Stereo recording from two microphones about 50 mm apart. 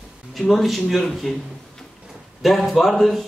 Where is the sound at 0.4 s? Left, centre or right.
Centre.